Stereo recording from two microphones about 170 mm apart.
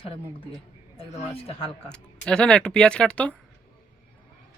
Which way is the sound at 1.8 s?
5° left (ahead or behind).